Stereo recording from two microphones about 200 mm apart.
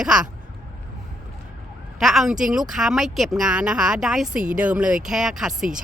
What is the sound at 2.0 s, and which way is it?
Speech, centre (ahead or behind).